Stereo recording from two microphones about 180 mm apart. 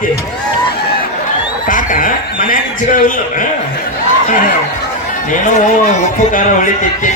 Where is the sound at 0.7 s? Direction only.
60° left (ahead or behind).